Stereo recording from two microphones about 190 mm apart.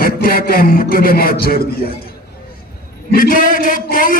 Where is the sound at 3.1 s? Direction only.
50° left (ahead or behind).